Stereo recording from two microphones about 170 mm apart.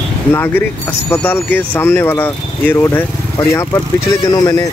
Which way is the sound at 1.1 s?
10° left (ahead or behind).